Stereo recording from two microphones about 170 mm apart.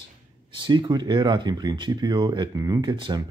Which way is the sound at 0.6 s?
25° right (ahead or behind).